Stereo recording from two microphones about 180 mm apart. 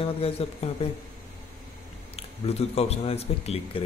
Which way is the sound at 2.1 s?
35° left (ahead or behind).